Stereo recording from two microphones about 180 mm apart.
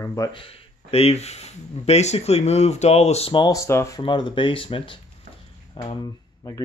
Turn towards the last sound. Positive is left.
turn(degrees=20)  # may be behind; listen again after turning